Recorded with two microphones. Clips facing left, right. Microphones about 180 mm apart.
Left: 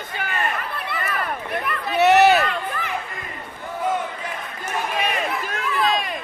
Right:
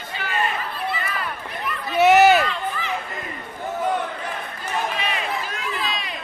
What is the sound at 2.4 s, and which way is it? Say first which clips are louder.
Run: even; 55° left (ahead or behind).